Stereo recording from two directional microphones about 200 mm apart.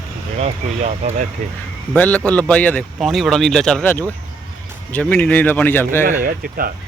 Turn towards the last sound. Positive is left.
turn(degrees=-45)  # may be behind; listen again after turning